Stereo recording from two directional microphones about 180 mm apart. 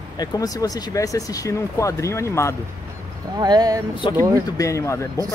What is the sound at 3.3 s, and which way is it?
Speech, 25° right (ahead or behind).